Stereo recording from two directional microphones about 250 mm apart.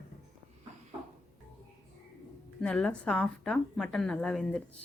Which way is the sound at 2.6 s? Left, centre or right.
Centre.